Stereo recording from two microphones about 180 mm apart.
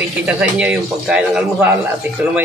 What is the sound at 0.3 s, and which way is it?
A man's voice, 5° right (ahead or behind).